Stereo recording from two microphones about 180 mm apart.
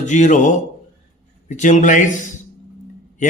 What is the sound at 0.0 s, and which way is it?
A man's voice, 45° left (ahead or behind).